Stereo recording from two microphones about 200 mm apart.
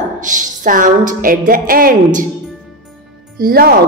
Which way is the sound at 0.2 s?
40° right (ahead or behind).